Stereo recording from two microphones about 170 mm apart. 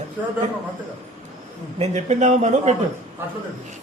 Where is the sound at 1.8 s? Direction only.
40° right (ahead or behind).